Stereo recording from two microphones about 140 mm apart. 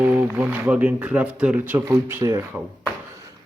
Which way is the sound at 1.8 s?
25° right (ahead or behind).